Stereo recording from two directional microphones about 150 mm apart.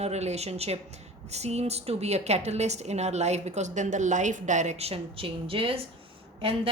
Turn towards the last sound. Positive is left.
turn(degrees=-40)  # may be behind; listen again after turning